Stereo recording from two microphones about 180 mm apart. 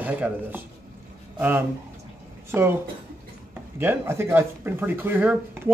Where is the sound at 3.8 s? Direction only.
15° right (ahead or behind).